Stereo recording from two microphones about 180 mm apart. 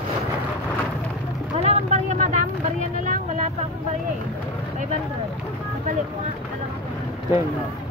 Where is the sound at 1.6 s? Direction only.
35° right (ahead or behind).